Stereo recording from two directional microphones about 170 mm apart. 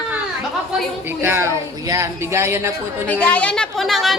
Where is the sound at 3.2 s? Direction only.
10° left (ahead or behind).